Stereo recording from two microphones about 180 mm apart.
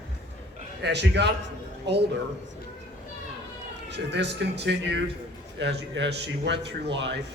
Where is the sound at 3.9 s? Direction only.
70° right (ahead or behind).